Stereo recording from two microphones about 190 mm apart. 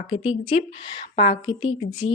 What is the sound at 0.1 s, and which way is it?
A woman's voice, 30° left (ahead or behind).